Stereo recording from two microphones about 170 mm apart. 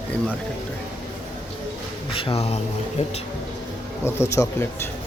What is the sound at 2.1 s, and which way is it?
Speech, 35° left (ahead or behind).